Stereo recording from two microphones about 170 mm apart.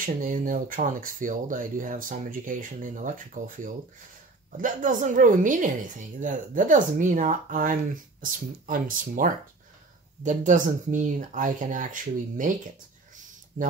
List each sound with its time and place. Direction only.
0.0 s speech: 50° right (ahead or behind)
13.5 s speech: 45° right (ahead or behind)